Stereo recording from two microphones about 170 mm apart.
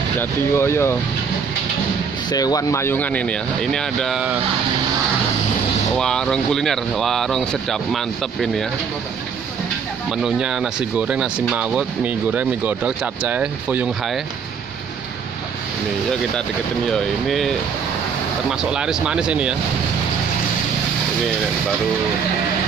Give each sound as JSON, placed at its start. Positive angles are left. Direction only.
{"t": 0.2, "sound": "speech", "side_deg": 15}
{"t": 2.2, "sound": "speech", "side_deg": 20}
{"t": 5.9, "sound": "speech", "side_deg": 5}
{"t": 10.0, "sound": "speech", "side_deg": -5}
{"t": 16.1, "sound": "speech", "side_deg": 5}